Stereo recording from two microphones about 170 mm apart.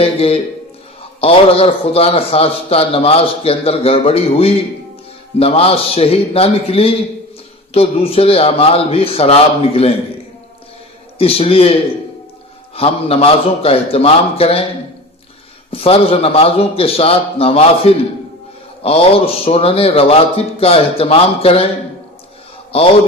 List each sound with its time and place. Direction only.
0.0 s speech: 35° left (ahead or behind)
11.2 s speech: 35° left (ahead or behind)
15.7 s speech: 35° left (ahead or behind)
22.7 s a man's voice: 35° left (ahead or behind)